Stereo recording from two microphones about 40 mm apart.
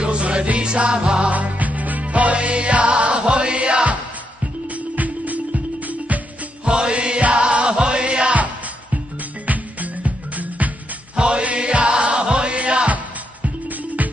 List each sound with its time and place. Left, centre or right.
0.0 s music: right
1.3 s music: right
4.6 s music: right
6.6 s music: right
9.5 s music: right
11.1 s music: right